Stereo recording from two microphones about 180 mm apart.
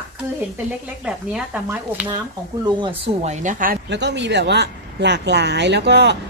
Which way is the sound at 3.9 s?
75° right (ahead or behind).